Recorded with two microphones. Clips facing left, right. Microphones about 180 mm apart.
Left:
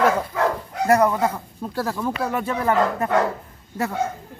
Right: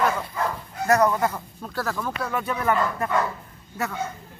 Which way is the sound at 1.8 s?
25° left (ahead or behind).